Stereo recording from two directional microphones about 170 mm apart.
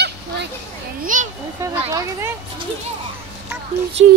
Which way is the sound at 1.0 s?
50° right (ahead or behind).